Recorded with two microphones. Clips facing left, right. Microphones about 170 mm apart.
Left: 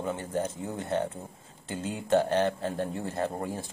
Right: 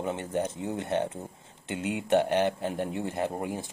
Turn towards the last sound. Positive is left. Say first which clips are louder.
# right 1 dB
turn(degrees=-20)  # may be behind; listen again after turning